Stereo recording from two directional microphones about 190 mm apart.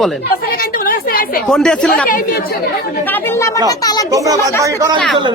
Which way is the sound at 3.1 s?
15° left (ahead or behind).